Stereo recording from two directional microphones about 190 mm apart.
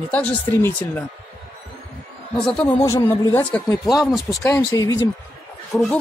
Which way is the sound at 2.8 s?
15° left (ahead or behind).